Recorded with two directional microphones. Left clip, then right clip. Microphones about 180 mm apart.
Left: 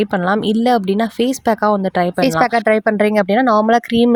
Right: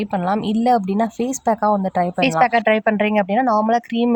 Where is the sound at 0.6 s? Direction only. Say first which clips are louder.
Even; 40° left (ahead or behind); by 4.1 s 70° left (ahead or behind).